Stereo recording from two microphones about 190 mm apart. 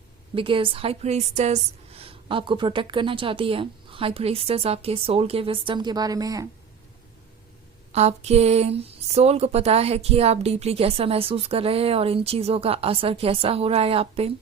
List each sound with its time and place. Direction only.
0.3 s a woman's voice: 25° right (ahead or behind)
7.9 s speech: 35° right (ahead or behind)